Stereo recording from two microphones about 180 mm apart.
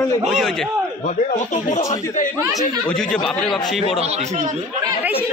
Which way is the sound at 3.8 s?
35° right (ahead or behind).